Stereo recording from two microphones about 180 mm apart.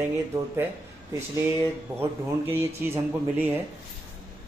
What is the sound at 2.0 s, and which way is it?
A man's voice, 10° right (ahead or behind).